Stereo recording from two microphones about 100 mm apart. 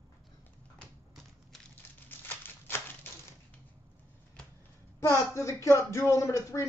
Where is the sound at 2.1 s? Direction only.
20° left (ahead or behind).